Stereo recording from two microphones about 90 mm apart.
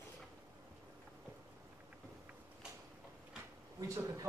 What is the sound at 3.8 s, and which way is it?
Speech, 35° right (ahead or behind).